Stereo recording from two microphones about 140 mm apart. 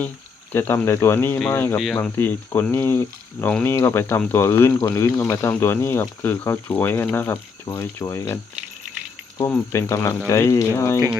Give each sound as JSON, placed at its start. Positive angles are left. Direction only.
{"t": 0.5, "sound": "speech", "side_deg": 15}
{"t": 9.7, "sound": "speech", "side_deg": 20}